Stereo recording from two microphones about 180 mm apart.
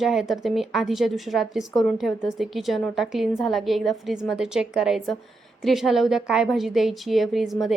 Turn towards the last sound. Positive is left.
turn(degrees=0)  # may be behind; listen again after turning